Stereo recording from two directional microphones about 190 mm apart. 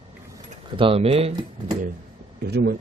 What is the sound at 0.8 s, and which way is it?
Speech, 30° right (ahead or behind).